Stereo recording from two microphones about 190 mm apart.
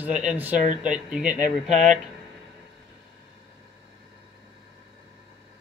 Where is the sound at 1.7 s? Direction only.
40° right (ahead or behind).